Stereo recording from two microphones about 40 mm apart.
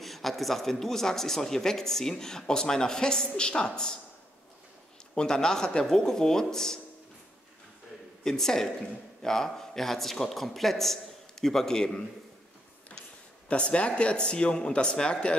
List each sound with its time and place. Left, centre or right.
0.0 s speech: centre
5.1 s speech: centre
8.2 s a man's voice: centre
13.5 s speech: left